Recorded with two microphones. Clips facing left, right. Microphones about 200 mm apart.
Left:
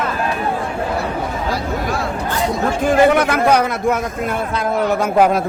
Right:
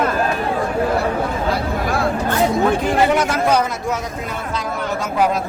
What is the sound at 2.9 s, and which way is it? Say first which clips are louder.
A man's voice: left 4 dB; 55° left (ahead or behind).